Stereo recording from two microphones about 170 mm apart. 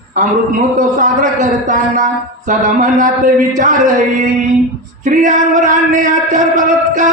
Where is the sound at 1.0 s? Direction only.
45° right (ahead or behind).